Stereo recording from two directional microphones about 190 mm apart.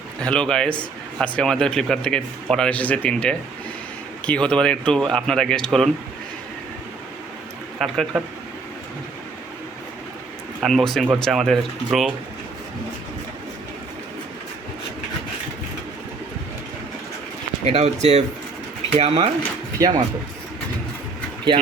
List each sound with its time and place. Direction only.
0.2 s speech: 5° left (ahead or behind)
7.8 s speech: centre (ahead or behind)
10.6 s speech: centre (ahead or behind)
17.7 s speech: 35° right (ahead or behind)
19.8 s speech: 20° right (ahead or behind)